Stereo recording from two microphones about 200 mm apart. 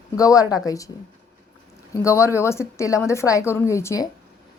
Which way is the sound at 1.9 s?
15° left (ahead or behind).